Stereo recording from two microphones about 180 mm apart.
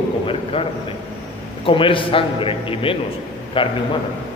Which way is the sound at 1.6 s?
30° left (ahead or behind).